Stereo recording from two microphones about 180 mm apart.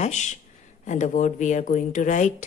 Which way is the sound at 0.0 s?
40° left (ahead or behind).